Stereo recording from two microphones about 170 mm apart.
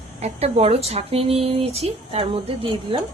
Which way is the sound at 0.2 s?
40° right (ahead or behind).